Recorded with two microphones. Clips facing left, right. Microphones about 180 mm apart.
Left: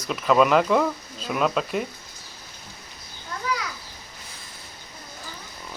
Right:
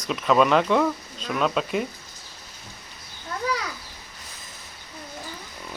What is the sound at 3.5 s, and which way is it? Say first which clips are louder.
Children playing: even; 35° right (ahead or behind).